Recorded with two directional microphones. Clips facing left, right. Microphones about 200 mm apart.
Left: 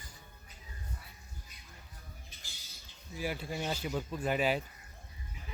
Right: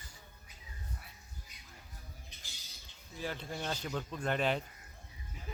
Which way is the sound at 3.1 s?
10° left (ahead or behind).